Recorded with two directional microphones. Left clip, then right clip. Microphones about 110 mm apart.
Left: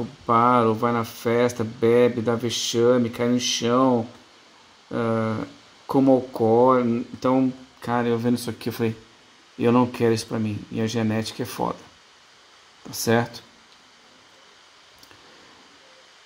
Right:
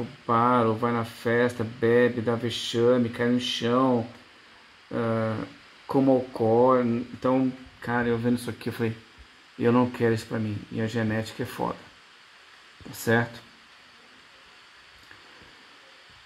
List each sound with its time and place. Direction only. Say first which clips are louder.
0.3 s speech: left 4 dB; 30° left (ahead or behind)
4.9 s speech: left 3 dB; 30° left (ahead or behind)
7.8 s speech: left 3 dB; 30° left (ahead or behind)
13.0 s speech: left 3 dB; 25° left (ahead or behind)